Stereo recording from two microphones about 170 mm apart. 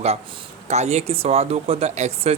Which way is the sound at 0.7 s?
40° right (ahead or behind).